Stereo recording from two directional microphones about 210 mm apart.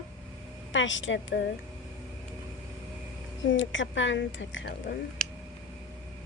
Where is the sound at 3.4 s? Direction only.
60° left (ahead or behind).